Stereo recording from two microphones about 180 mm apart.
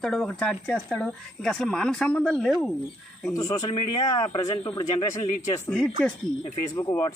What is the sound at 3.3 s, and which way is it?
A man's voice, 20° left (ahead or behind).